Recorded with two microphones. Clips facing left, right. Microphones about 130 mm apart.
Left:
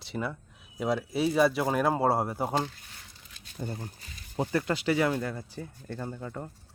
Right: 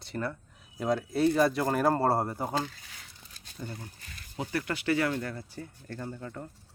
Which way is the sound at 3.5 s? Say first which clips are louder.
Left 4 dB; 45° left (ahead or behind).